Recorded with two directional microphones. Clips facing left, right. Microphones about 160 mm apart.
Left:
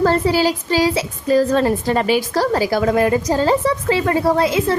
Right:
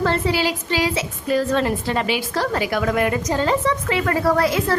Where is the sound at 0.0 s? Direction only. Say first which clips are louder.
Left 5 dB; 40° left (ahead or behind).